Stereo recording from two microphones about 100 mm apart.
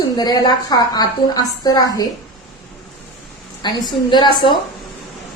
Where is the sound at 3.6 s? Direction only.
50° left (ahead or behind).